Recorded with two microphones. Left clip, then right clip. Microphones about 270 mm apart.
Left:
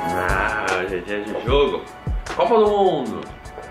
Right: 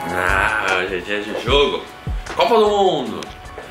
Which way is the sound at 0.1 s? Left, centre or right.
Centre.